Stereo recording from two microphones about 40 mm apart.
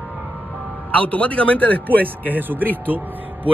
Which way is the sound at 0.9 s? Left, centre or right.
Left.